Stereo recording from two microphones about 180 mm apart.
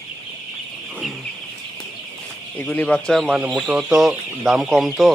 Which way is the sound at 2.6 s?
5° left (ahead or behind).